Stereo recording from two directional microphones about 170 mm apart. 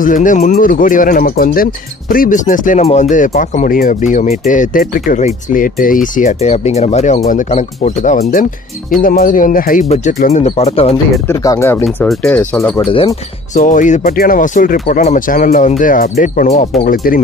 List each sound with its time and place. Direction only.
0.0 s speech: 50° left (ahead or behind)
10.4 s speech: 35° left (ahead or behind)
11.2 s speech: 20° left (ahead or behind)
11.8 s speech: centre (ahead or behind)
12.9 s speech: 35° left (ahead or behind); by 17.2 s 55° left (ahead or behind)